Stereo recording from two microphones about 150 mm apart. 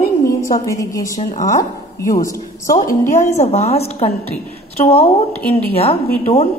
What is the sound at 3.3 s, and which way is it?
A woman's voice, 45° left (ahead or behind).